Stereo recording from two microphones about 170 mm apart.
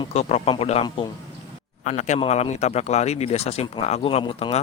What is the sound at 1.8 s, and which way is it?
Speech, 45° left (ahead or behind).